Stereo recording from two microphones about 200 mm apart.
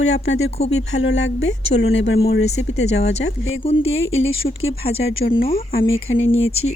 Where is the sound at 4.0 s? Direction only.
80° left.